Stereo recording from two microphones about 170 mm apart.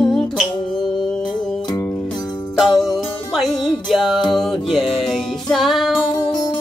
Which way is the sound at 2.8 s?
Centre (ahead or behind).